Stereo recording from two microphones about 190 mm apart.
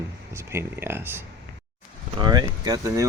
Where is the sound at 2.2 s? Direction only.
20° right (ahead or behind).